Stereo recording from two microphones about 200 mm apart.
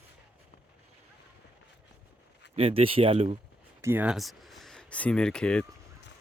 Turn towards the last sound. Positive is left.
turn(degrees=5)  # may be behind; listen again after turning